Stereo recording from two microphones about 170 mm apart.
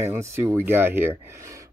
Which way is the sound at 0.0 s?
15° right (ahead or behind).